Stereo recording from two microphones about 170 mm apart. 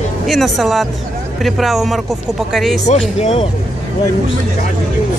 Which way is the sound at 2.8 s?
40° left (ahead or behind).